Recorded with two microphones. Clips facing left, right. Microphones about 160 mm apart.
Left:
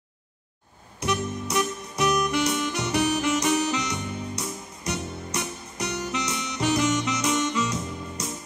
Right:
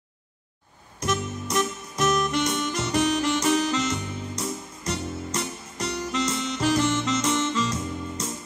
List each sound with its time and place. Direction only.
1.0 s music: 15° left (ahead or behind)